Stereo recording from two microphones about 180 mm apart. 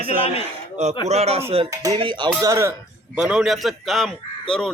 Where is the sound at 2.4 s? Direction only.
15° right (ahead or behind).